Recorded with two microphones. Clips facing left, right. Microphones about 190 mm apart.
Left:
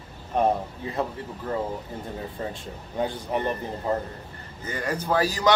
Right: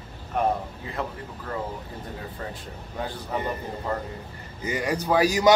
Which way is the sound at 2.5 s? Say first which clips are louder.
Left 1 dB; 25° left (ahead or behind).